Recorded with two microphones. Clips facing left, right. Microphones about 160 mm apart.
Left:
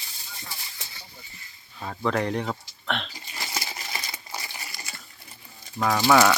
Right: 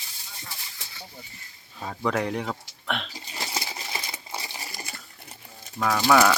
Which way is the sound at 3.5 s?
20° right (ahead or behind).